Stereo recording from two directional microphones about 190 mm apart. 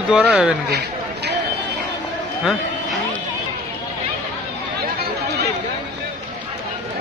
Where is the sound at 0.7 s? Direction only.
60° right (ahead or behind).